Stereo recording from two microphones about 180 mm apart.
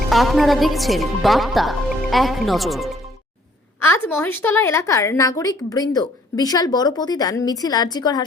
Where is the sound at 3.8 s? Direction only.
15° left (ahead or behind).